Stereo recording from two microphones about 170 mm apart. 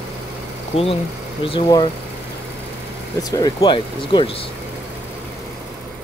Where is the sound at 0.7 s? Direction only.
35° left (ahead or behind).